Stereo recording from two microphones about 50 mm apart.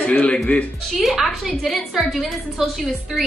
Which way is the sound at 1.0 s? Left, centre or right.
Centre.